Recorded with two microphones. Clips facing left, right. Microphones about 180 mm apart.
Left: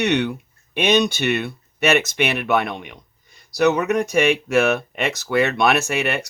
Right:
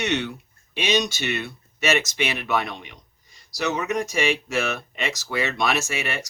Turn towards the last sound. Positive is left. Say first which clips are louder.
# left 6 dB
turn(degrees=60)  # may be behind; listen again after turning